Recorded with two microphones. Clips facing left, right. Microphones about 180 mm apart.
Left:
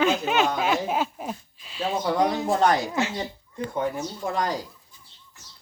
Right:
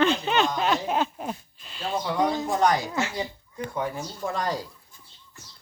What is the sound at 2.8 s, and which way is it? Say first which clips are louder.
Speech: left 2 dB; 15° left (ahead or behind).